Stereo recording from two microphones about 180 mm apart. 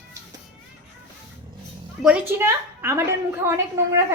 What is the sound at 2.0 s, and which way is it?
Speech, 10° right (ahead or behind).